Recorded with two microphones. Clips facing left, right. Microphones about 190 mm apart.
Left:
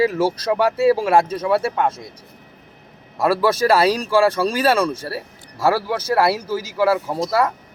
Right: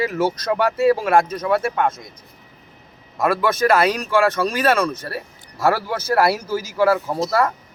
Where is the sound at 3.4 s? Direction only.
30° left (ahead or behind).